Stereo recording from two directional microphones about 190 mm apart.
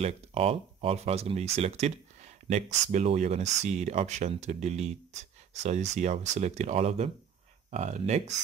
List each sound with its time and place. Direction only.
0.0 s speech: 30° right (ahead or behind)